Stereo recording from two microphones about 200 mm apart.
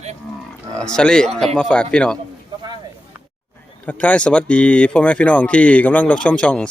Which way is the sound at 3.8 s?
5° left (ahead or behind).